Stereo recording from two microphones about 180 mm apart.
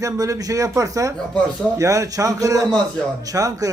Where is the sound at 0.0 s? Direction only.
20° right (ahead or behind).